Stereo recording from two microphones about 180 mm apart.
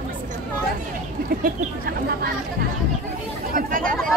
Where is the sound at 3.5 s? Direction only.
50° right (ahead or behind).